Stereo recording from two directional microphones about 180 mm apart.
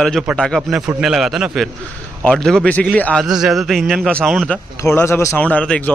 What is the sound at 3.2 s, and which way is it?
Speech, centre (ahead or behind).